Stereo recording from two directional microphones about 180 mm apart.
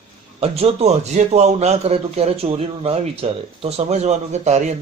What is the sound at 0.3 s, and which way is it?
A man's voice, 35° right (ahead or behind).